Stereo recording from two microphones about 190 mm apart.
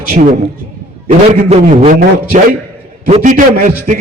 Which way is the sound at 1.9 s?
45° right (ahead or behind).